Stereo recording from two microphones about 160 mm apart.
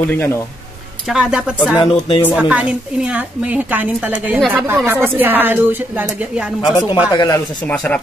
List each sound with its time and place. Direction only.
0.1 s speech: 15° left (ahead or behind)
1.0 s speech: 5° right (ahead or behind)
1.8 s speech: 30° left (ahead or behind)
2.3 s a woman's voice: 5° right (ahead or behind)
7.1 s speech: 25° left (ahead or behind)
7.6 s speech: 10° left (ahead or behind)